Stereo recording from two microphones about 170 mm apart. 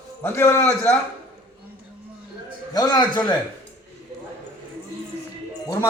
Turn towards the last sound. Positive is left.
turn(degrees=20)  # may be behind; listen again after turning